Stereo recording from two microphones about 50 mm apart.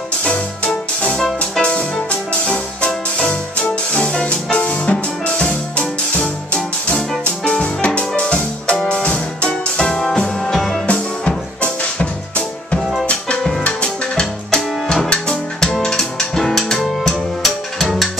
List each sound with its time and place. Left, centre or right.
1.7 s music: left; by 10.8 s centre
10.9 s music: left
13.4 s music: centre
13.7 s music: left
14.5 s music: centre